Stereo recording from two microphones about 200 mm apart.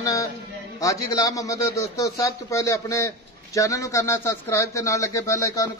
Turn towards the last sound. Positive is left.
turn(degrees=15)  # may be behind; listen again after turning